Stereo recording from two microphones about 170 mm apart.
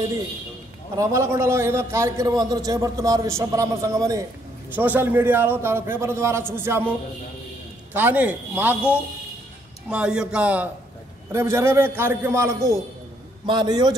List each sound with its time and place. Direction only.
0.9 s a man's voice: 20° right (ahead or behind)
7.9 s a man's voice: 10° right (ahead or behind)
9.8 s a man's voice: 5° right (ahead or behind); by 13.9 s 25° right (ahead or behind)